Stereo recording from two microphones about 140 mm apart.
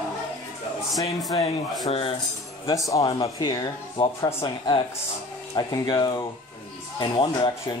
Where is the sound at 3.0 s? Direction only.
35° left (ahead or behind).